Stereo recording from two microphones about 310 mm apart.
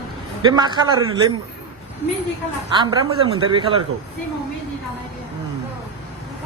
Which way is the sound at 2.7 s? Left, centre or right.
Centre.